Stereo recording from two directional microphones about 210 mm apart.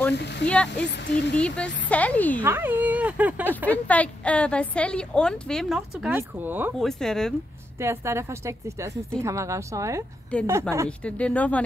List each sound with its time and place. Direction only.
0.1 s speech: 55° left (ahead or behind)
0.5 s a woman's voice: 5° left (ahead or behind)
0.8 s speech: 55° left (ahead or behind)
1.3 s speech: 5° left (ahead or behind)
2.4 s speech: 10° right (ahead or behind)
3.7 s a woman's voice: 5° left (ahead or behind); by 6.7 s 10° right (ahead or behind)
6.8 s a woman's voice: centre (ahead or behind)
7.8 s speech: 15° right (ahead or behind)
10.3 s a woman's voice: 5° left (ahead or behind)